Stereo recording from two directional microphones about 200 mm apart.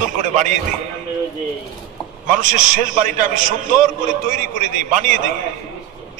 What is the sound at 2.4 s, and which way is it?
A man's voice, 40° right (ahead or behind).